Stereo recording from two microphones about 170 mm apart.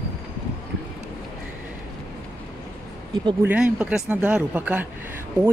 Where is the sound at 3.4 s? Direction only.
10° right (ahead or behind).